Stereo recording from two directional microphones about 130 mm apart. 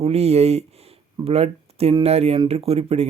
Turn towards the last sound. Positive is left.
turn(degrees=-50)  # may be behind; listen again after turning